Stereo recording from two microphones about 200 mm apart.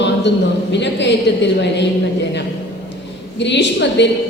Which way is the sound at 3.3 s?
60° left (ahead or behind).